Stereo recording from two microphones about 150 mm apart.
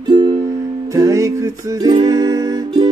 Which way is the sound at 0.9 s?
20° right (ahead or behind).